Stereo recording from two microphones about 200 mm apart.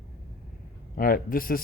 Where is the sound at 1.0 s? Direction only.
45° left (ahead or behind).